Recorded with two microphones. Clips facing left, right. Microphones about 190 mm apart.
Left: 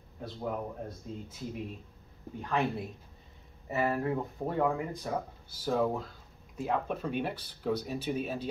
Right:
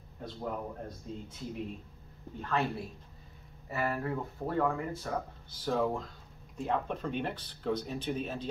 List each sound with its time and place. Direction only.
0.2 s speech: 5° left (ahead or behind)
2.4 s speech: 15° left (ahead or behind)